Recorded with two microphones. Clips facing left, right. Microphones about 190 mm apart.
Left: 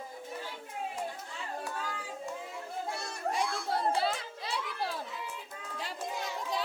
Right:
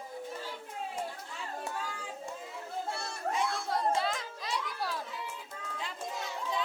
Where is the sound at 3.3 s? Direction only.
30° left (ahead or behind).